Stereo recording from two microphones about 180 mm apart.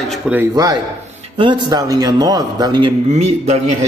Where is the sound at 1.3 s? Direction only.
30° right (ahead or behind).